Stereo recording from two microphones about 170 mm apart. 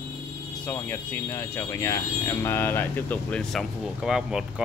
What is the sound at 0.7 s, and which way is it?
A man's voice, 10° left (ahead or behind).